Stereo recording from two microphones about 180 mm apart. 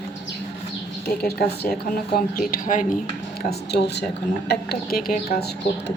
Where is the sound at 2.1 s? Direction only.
50° left (ahead or behind).